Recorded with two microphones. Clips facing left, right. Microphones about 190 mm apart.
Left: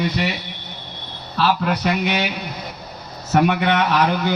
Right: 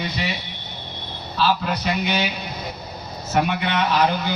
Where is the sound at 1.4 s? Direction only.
65° left (ahead or behind).